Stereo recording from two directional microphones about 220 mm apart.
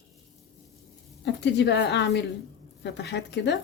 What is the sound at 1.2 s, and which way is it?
A woman's voice, 50° left (ahead or behind).